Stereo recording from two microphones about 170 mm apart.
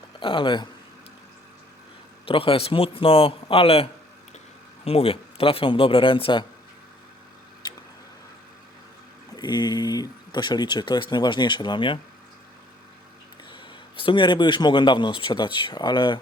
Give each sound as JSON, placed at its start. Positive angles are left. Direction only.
{"t": 0.2, "sound": "a man's voice", "side_deg": 30}
{"t": 2.2, "sound": "a man's voice", "side_deg": 30}
{"t": 4.9, "sound": "a man's voice", "side_deg": 35}
{"t": 7.6, "sound": "a sound", "side_deg": 25}
{"t": 9.3, "sound": "a man's voice", "side_deg": 25}
{"t": 13.5, "sound": "a man's voice", "side_deg": 30}